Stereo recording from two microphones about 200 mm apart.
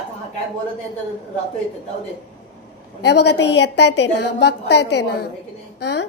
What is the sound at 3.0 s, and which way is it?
A woman's voice, 55° left (ahead or behind).